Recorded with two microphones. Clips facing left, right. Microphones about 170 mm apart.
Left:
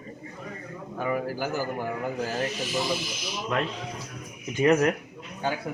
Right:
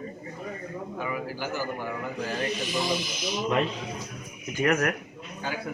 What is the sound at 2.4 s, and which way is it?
Speech, 5° left (ahead or behind).